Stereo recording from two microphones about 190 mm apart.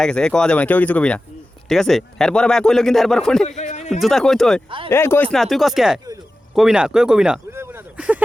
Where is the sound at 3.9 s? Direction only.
Centre (ahead or behind).